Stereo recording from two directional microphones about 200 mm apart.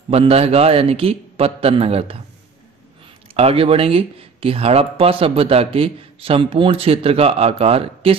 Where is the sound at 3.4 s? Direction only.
30° right (ahead or behind).